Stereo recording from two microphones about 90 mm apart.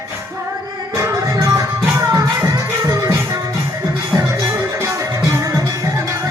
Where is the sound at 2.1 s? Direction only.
35° right (ahead or behind).